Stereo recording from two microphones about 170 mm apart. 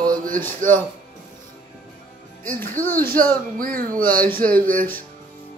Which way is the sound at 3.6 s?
55° right (ahead or behind).